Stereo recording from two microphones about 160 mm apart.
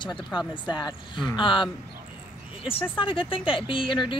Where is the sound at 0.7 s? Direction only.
30° left (ahead or behind).